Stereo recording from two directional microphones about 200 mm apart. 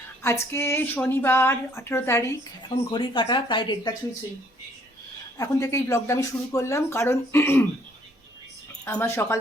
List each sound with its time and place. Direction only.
0.2 s speech: 15° left (ahead or behind)
2.6 s speech: 25° left (ahead or behind)
5.4 s speech: 15° left (ahead or behind)
8.8 s speech: 10° left (ahead or behind)